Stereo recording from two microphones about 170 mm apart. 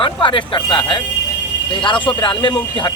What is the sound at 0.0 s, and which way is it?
Speech, 30° left (ahead or behind).